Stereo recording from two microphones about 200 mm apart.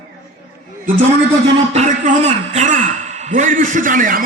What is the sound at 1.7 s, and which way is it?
A man's voice, 35° right (ahead or behind).